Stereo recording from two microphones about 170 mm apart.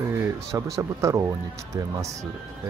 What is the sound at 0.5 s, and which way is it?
Speech, 20° right (ahead or behind).